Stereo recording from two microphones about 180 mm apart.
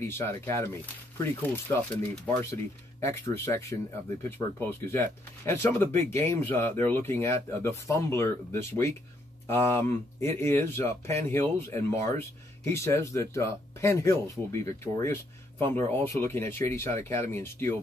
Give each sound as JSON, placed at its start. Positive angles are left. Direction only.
{"t": 0.0, "sound": "speech", "side_deg": 15}